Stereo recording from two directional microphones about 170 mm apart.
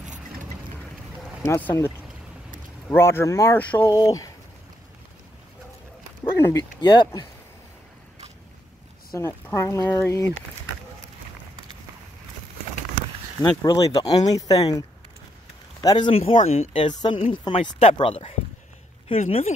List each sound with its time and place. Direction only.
1.4 s speech: 15° left (ahead or behind)
2.9 s speech: 15° left (ahead or behind)
3.9 s speech: 20° left (ahead or behind)
6.4 s speech: 25° left (ahead or behind)
9.1 s speech: 15° left (ahead or behind)
13.4 s speech: 25° left (ahead or behind)
16.1 s speech: 35° left (ahead or behind)